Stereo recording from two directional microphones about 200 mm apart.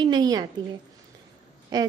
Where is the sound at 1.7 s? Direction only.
20° right (ahead or behind).